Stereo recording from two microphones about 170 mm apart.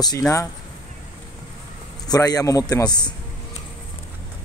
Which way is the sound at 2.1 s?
20° left (ahead or behind).